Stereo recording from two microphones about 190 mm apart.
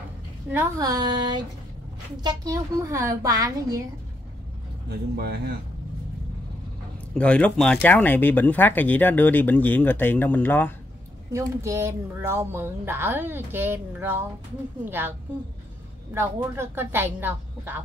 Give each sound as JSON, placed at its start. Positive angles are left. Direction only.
{"t": 0.5, "sound": "speech", "side_deg": -15}
{"t": 4.8, "sound": "speech", "side_deg": -55}
{"t": 7.2, "sound": "speech", "side_deg": 5}
{"t": 11.3, "sound": "speech", "side_deg": -15}
{"t": 16.2, "sound": "speech", "side_deg": -10}